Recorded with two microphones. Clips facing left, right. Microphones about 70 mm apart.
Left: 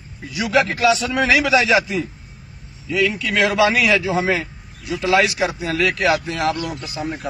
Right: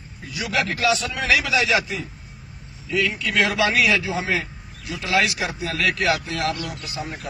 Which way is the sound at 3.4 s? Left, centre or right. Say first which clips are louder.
Left 6 dB; left.